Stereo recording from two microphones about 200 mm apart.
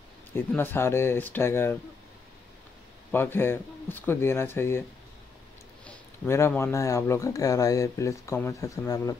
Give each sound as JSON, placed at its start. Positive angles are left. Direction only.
{"t": 0.3, "sound": "speech", "side_deg": 10}
{"t": 3.1, "sound": "speech", "side_deg": 10}
{"t": 5.9, "sound": "speech", "side_deg": 10}